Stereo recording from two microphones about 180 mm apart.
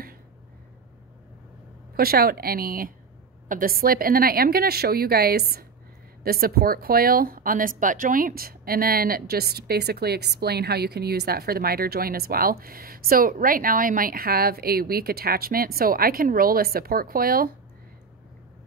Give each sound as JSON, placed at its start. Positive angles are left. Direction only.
{"t": 2.0, "sound": "speech", "side_deg": -55}